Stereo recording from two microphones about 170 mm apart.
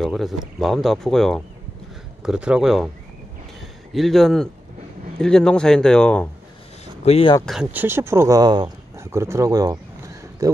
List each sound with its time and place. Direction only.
0.0 s speech: centre (ahead or behind)
3.9 s speech: centre (ahead or behind)
7.1 s speech: 35° left (ahead or behind)
7.7 s speech: 10° right (ahead or behind)